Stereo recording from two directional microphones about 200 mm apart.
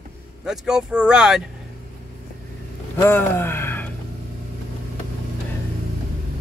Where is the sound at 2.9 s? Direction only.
10° left (ahead or behind).